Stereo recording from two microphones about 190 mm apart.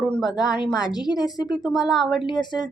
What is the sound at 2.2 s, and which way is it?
Speech, 25° left (ahead or behind).